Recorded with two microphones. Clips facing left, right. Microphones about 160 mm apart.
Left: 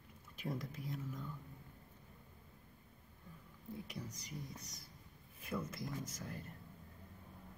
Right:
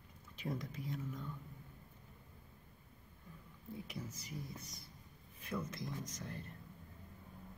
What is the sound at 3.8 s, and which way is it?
Speech, 5° right (ahead or behind).